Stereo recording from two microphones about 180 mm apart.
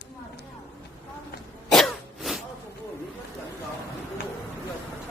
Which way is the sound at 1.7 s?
Centre (ahead or behind).